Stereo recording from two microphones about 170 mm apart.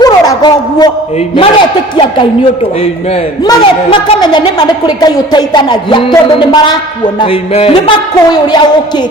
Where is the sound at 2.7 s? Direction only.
35° left (ahead or behind).